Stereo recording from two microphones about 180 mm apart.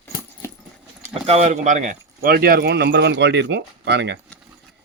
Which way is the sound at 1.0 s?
35° right (ahead or behind).